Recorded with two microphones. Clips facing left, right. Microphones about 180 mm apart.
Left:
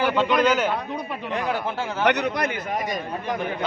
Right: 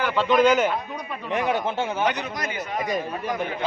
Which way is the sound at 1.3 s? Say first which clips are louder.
Right 3 dB; 20° right (ahead or behind).